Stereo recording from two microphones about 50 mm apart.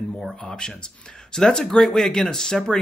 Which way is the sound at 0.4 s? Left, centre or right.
Centre.